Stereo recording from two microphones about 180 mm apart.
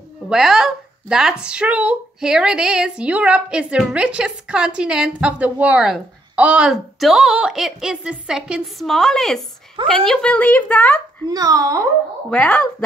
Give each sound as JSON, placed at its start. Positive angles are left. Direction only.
{"t": 0.3, "sound": "speech", "side_deg": 0}
{"t": 11.2, "sound": "a child's voice", "side_deg": -20}
{"t": 12.3, "sound": "speech", "side_deg": 5}